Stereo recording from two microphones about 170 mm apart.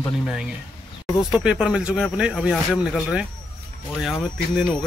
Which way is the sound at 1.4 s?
5° right (ahead or behind).